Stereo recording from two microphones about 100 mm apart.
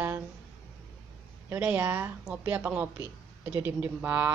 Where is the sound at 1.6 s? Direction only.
15° right (ahead or behind).